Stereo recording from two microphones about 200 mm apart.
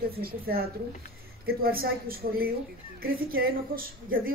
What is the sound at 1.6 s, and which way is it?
A woman's voice, 50° right (ahead or behind).